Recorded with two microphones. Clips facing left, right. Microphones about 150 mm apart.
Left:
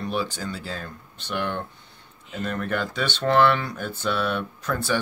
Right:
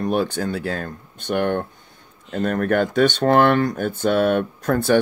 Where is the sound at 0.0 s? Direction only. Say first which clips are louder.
Right 7 dB; 55° right (ahead or behind).